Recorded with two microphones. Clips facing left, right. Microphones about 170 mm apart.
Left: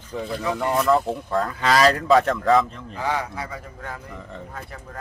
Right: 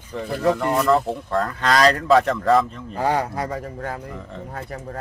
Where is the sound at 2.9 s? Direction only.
40° right (ahead or behind).